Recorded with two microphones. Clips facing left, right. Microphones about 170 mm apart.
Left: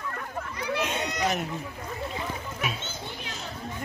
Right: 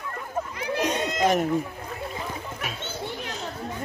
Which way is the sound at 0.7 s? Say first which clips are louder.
Right 5 dB; 40° right (ahead or behind).